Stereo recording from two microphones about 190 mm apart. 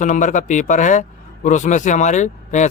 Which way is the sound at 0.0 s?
40° left (ahead or behind).